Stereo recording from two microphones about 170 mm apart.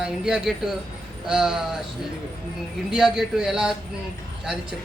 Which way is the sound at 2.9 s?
Centre (ahead or behind).